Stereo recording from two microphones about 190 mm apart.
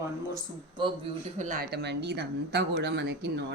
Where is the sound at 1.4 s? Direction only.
40° right (ahead or behind).